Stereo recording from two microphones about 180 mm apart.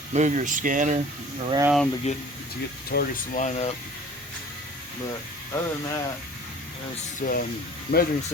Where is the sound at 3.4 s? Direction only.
40° left (ahead or behind).